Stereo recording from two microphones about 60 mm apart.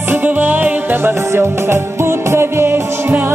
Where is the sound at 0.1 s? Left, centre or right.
Right.